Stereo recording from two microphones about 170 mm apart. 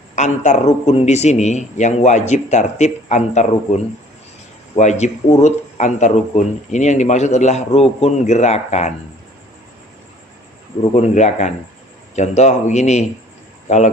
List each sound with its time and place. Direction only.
0.2 s speech: 45° left (ahead or behind)
10.9 s speech: 45° left (ahead or behind)